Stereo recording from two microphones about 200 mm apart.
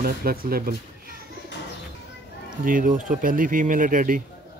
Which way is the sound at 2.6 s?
40° right (ahead or behind).